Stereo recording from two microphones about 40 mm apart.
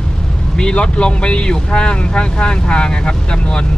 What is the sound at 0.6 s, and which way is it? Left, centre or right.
Speech, left.